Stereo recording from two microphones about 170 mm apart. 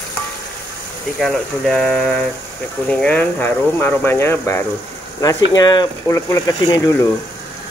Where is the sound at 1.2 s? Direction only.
Centre (ahead or behind).